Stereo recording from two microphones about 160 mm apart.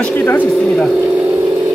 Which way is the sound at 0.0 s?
15° left (ahead or behind).